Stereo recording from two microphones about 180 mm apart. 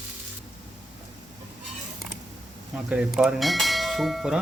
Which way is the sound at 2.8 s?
5° right (ahead or behind).